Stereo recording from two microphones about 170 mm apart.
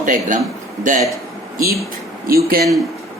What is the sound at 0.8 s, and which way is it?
Speech, 50° right (ahead or behind).